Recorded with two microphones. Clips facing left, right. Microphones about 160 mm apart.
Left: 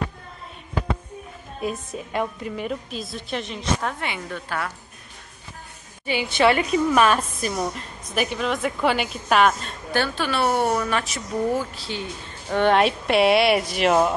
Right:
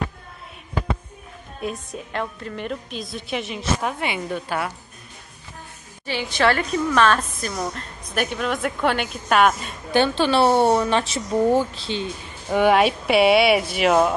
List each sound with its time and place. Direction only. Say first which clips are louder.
1.6 s a woman's voice: left 1 dB; centre (ahead or behind); by 4.7 s 15° right (ahead or behind)
6.3 s a woman's voice: left 2 dB; 5° left (ahead or behind)
9.8 s speech: right 5 dB; 20° right (ahead or behind)
12.4 s a woman's voice: right 2 dB; 10° right (ahead or behind)